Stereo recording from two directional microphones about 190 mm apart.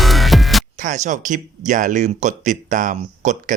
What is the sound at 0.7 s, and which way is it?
Speech, 40° right (ahead or behind).